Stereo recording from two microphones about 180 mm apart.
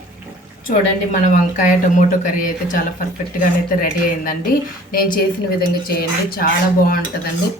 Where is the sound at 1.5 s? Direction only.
45° left (ahead or behind).